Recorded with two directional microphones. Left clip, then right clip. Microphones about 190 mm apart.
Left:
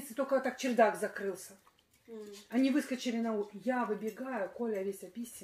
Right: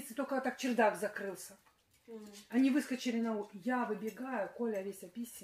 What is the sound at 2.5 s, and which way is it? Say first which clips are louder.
Cutlery: left 1 dB; 20° left (ahead or behind).